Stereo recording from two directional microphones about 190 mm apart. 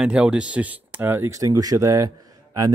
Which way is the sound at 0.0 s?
5° right (ahead or behind).